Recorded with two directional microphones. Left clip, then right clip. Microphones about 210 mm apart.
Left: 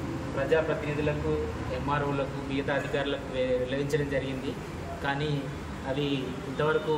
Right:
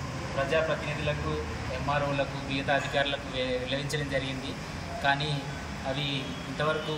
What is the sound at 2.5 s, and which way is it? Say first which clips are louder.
A man's voice: right 2 dB; 5° left (ahead or behind).